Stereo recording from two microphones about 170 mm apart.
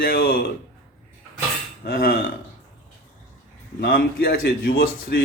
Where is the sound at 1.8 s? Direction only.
60° left (ahead or behind).